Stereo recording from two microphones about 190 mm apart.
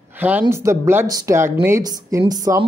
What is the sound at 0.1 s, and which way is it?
Speech, 10° right (ahead or behind).